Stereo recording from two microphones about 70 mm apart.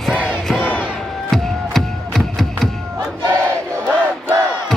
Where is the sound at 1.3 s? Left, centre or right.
Centre.